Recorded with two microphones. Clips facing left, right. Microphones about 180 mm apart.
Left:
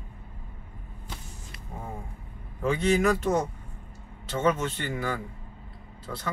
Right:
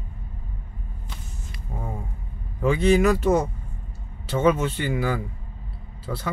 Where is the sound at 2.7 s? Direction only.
Centre (ahead or behind).